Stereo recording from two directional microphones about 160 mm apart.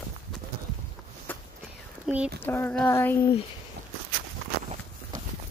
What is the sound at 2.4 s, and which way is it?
Speech, 15° left (ahead or behind).